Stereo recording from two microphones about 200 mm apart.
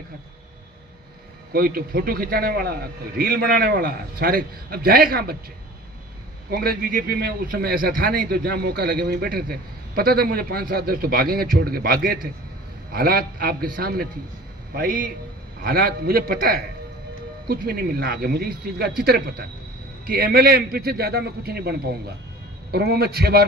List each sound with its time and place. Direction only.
1.5 s a man's voice: 45° right (ahead or behind)
6.5 s a man's voice: 50° right (ahead or behind)